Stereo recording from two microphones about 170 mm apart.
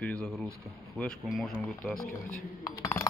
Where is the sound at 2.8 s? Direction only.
15° left (ahead or behind).